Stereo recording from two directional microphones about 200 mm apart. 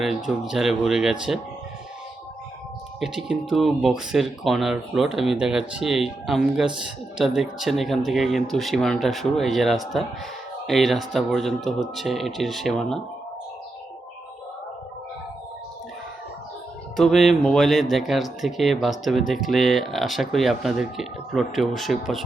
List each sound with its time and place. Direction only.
0.3 s speech: centre (ahead or behind)
3.0 s speech: centre (ahead or behind)
17.0 s speech: centre (ahead or behind)